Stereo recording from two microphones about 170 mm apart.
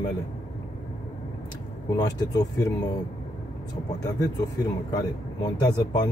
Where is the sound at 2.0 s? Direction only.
20° left (ahead or behind).